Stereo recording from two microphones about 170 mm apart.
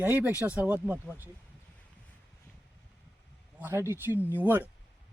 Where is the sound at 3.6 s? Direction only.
15° right (ahead or behind).